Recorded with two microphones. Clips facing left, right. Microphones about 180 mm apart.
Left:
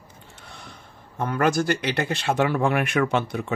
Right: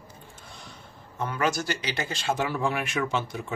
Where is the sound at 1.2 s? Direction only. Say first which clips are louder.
Left 5 dB; 55° left (ahead or behind).